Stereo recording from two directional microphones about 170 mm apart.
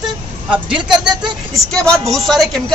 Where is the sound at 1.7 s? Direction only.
5° left (ahead or behind).